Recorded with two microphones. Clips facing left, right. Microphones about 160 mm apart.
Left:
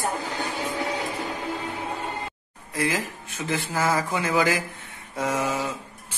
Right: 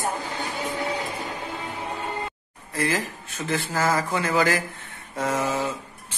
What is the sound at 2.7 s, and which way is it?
Speech, 10° left (ahead or behind).